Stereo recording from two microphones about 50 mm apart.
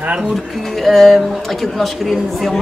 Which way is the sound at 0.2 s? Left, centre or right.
Centre.